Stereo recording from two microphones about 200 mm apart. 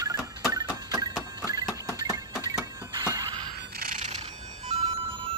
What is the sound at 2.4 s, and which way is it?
Printer, 20° right (ahead or behind).